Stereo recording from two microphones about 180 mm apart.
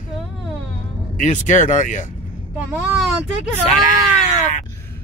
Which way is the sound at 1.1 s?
45° left (ahead or behind).